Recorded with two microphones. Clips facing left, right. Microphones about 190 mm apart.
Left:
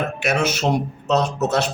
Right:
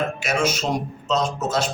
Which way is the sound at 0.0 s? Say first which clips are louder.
Left 1 dB; 65° left (ahead or behind).